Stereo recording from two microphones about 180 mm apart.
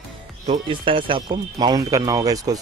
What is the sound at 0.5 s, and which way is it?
Speech, 30° right (ahead or behind).